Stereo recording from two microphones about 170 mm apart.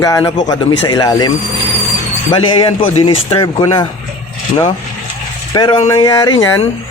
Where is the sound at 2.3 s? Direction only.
30° left (ahead or behind).